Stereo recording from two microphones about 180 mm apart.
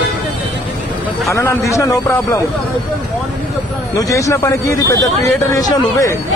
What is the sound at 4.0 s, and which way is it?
A man's voice, 20° left (ahead or behind).